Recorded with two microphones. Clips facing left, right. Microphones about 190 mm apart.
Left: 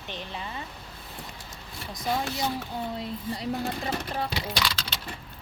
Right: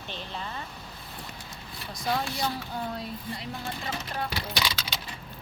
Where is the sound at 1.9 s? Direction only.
20° left (ahead or behind).